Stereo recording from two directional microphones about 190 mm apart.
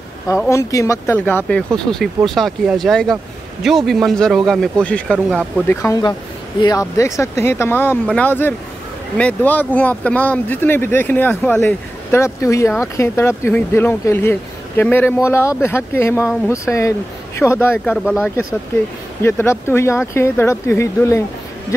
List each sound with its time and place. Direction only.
0.5 s a man's voice: 15° left (ahead or behind)
5.1 s a man's voice: 5° right (ahead or behind)
5.7 s speech: 15° left (ahead or behind)
18.0 s a man's voice: 5° right (ahead or behind)
19.2 s speech: 15° left (ahead or behind)